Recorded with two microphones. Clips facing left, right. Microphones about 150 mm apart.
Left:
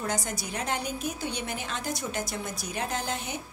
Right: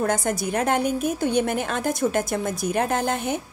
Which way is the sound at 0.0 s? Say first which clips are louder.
Right 9 dB; 50° right (ahead or behind).